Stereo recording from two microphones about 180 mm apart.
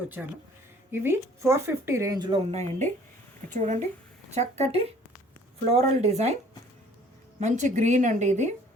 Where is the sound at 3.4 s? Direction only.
40° right (ahead or behind).